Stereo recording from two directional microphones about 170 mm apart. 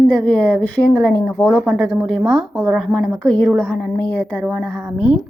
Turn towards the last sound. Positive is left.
turn(degrees=-5)  # may be behind; listen again after turning